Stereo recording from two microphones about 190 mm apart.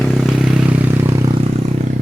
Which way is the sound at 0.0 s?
Centre (ahead or behind).